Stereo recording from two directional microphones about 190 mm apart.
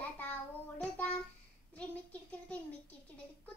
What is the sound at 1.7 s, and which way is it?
Speech, 5° left (ahead or behind).